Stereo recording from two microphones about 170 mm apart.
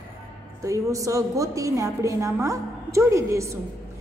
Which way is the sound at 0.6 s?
20° right (ahead or behind).